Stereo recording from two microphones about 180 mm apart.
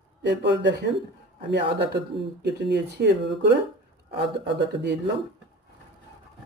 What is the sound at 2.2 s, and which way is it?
Speech, 70° right (ahead or behind).